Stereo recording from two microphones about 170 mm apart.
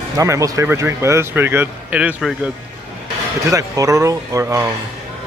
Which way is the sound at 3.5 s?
20° right (ahead or behind).